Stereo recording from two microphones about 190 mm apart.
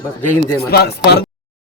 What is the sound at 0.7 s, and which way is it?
Speech, 55° left (ahead or behind).